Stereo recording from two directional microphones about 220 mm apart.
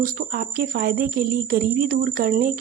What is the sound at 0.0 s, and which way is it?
Speech, 40° right (ahead or behind).